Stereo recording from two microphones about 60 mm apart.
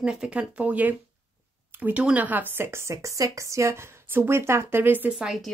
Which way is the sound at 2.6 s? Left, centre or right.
Right.